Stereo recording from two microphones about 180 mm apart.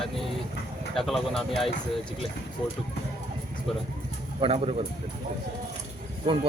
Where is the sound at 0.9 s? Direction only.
Centre (ahead or behind).